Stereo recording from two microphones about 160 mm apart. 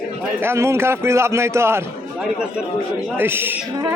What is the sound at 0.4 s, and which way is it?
A man's voice, 15° right (ahead or behind).